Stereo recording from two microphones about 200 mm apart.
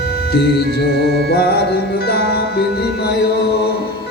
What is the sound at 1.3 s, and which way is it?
A man's voice, 50° left (ahead or behind).